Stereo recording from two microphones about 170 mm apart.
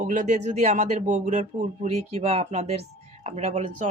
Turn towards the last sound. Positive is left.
turn(degrees=-40)  # may be behind; listen again after turning